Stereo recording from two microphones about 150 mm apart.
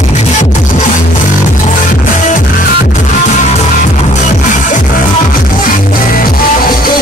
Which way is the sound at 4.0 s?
55° left (ahead or behind).